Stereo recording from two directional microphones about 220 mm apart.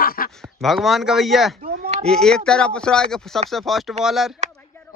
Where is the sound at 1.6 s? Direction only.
40° right (ahead or behind).